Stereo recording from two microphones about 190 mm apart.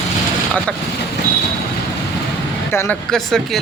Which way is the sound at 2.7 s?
15° left (ahead or behind).